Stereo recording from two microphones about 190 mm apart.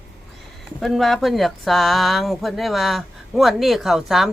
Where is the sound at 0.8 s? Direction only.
Centre (ahead or behind).